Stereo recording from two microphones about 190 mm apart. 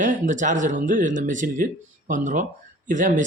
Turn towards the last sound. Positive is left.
turn(degrees=-40)  # may be behind; listen again after turning